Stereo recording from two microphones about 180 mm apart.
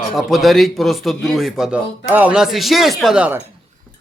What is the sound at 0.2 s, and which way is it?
A man's voice, centre (ahead or behind).